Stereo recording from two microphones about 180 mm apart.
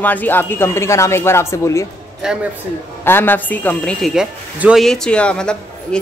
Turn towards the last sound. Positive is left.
turn(degrees=5)  # may be behind; listen again after turning